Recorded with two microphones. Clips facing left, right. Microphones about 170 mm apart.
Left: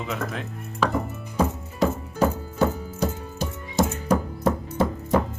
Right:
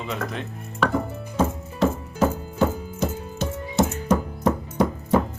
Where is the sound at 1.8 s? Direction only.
10° left (ahead or behind).